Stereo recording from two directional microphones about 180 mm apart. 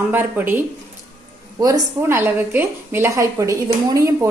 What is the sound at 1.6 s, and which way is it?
A woman's voice, 20° right (ahead or behind).